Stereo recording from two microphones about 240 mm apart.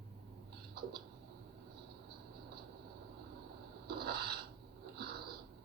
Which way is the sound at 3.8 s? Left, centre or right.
Right.